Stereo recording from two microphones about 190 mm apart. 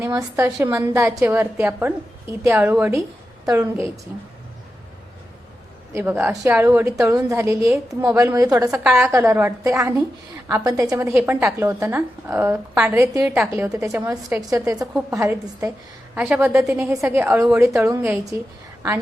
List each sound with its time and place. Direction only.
0.0 s a woman's voice: 15° right (ahead or behind)
5.9 s a woman's voice: 10° right (ahead or behind)
8.8 s a woman's voice: 5° right (ahead or behind)